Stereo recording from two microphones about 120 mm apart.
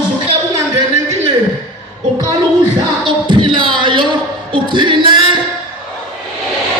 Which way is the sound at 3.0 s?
45° right (ahead or behind).